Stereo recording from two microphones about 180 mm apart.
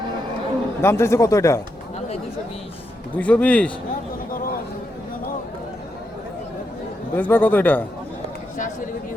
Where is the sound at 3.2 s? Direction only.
10° left (ahead or behind).